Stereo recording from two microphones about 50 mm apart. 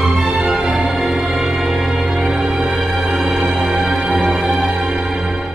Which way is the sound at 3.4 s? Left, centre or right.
Centre.